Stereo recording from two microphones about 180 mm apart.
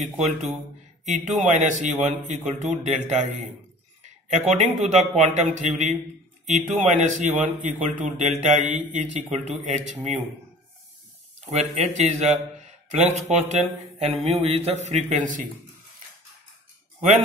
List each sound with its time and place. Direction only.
1.0 s speech: 40° right (ahead or behind)
4.0 s a sound: 40° right (ahead or behind)
4.7 s speech: 40° right (ahead or behind)
11.5 s speech: 40° right (ahead or behind)